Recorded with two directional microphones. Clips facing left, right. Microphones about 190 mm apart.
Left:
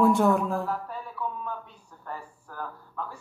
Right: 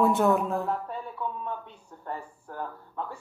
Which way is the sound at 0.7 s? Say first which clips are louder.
Right 1 dB; 25° right (ahead or behind).